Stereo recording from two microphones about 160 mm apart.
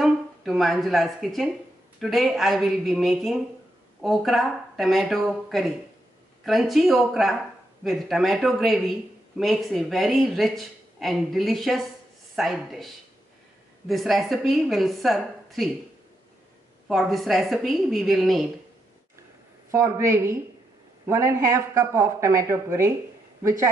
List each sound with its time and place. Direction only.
0.0 s speech: centre (ahead or behind)
16.8 s speech: centre (ahead or behind)
19.7 s speech: 15° right (ahead or behind)